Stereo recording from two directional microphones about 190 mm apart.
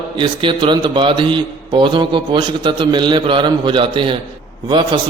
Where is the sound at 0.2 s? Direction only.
25° right (ahead or behind).